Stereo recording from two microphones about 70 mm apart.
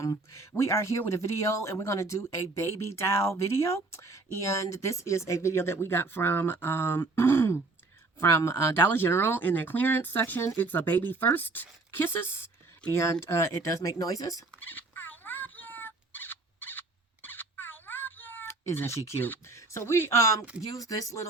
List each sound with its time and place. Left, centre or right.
0.0 s speech: left
14.6 s fowl: left
17.2 s a sound: left
19.5 s speech: left
20.7 s speech: left